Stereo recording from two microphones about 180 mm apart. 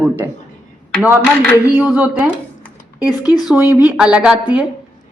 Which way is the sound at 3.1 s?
20° left (ahead or behind).